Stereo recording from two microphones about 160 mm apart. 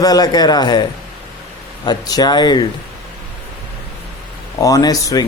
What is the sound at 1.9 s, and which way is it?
Speech, 25° left (ahead or behind).